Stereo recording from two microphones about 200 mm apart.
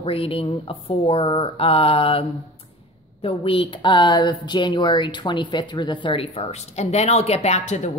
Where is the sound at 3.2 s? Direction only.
30° left (ahead or behind).